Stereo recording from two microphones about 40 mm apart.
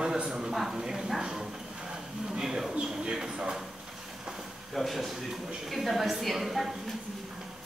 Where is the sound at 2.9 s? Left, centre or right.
Centre.